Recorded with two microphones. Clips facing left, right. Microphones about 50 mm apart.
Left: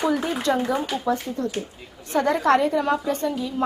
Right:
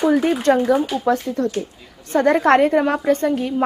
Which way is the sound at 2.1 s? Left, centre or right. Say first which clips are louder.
Right 5 dB; right.